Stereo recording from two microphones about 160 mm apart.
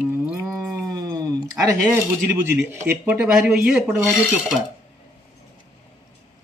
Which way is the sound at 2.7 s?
15° right (ahead or behind).